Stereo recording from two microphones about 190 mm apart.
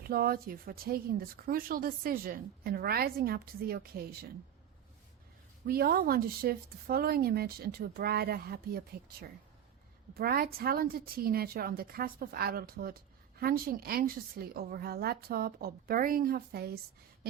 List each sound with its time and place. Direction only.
0.1 s speech: 50° right (ahead or behind)
5.6 s speech: 55° right (ahead or behind)
10.2 s speech: 50° right (ahead or behind)